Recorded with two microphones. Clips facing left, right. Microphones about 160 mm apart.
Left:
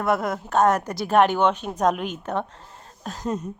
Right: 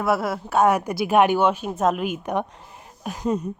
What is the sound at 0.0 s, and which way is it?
A woman's voice, 5° right (ahead or behind).